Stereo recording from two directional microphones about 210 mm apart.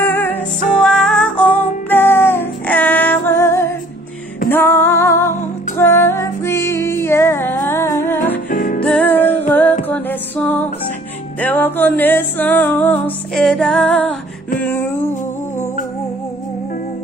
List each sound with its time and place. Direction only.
0.1 s music: 10° left (ahead or behind)
8.5 s music: 40° left (ahead or behind)
8.8 s music: 5° left (ahead or behind)